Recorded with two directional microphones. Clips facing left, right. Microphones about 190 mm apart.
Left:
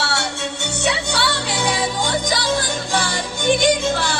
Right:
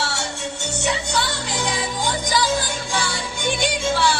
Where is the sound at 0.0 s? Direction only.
65° left (ahead or behind).